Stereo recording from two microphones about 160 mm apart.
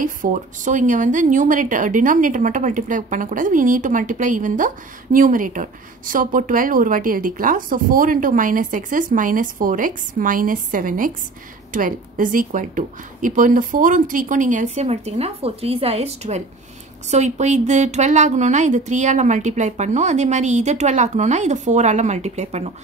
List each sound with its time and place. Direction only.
0.0 s a woman's voice: 55° right (ahead or behind)